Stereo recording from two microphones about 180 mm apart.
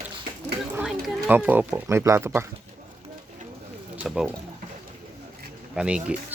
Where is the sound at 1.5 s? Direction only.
10° right (ahead or behind).